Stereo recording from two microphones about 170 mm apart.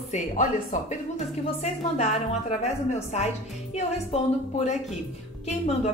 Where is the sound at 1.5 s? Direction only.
40° left (ahead or behind).